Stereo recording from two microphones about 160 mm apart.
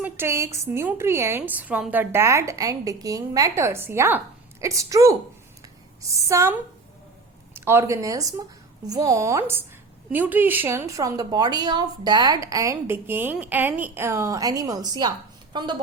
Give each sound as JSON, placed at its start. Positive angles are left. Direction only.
{"t": 0.0, "sound": "a woman's voice", "side_deg": -15}
{"t": 5.6, "sound": "a sound", "side_deg": -20}
{"t": 7.5, "sound": "a woman's voice", "side_deg": -15}